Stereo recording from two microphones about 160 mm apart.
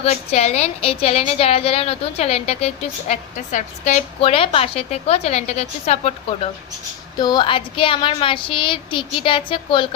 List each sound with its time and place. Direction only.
0.0 s a woman's voice: 40° left (ahead or behind)
7.2 s a woman's voice: 25° left (ahead or behind)